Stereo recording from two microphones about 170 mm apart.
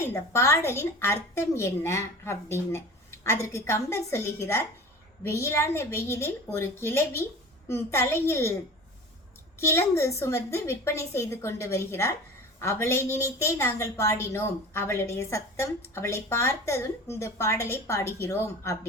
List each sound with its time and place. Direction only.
0.0 s a woman's voice: 15° left (ahead or behind)
9.6 s a woman's voice: 15° left (ahead or behind)